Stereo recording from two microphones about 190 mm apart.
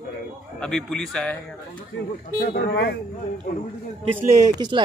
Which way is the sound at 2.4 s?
55° left (ahead or behind).